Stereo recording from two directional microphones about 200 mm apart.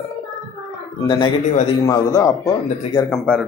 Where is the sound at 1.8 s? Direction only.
15° left (ahead or behind).